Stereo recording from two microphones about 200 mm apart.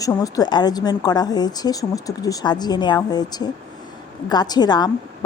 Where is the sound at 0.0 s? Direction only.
15° left (ahead or behind).